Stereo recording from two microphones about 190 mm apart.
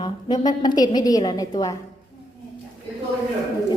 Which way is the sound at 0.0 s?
20° left (ahead or behind).